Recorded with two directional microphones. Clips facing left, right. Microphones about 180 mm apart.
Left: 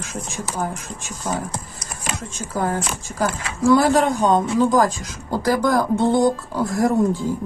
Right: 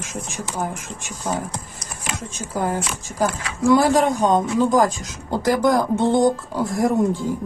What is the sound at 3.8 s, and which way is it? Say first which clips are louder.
Speech: even; 45° right (ahead or behind).